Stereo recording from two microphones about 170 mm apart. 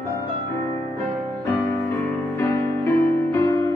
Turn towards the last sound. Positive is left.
turn(degrees=15)  # may be behind; listen again after turning